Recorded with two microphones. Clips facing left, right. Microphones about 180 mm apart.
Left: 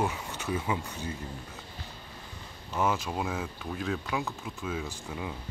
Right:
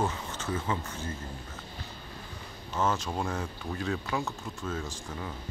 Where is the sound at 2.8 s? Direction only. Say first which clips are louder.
Even; 10° left (ahead or behind).